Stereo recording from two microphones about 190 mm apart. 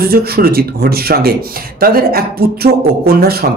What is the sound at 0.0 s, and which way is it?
Speech, 55° right (ahead or behind).